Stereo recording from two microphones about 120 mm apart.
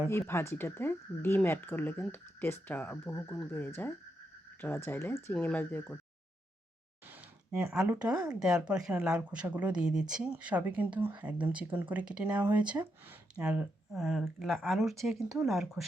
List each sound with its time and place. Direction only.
0.1 s speech: 20° left (ahead or behind)
7.1 s a sound: 5° right (ahead or behind)
7.9 s speech: 10° right (ahead or behind)